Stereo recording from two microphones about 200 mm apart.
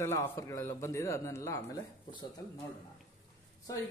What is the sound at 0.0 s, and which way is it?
Speech, 15° left (ahead or behind).